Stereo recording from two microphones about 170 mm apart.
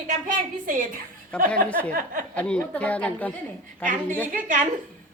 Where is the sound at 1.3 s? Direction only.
5° left (ahead or behind).